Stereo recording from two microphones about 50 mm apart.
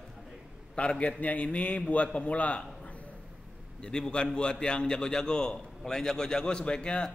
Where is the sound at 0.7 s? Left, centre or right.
Left.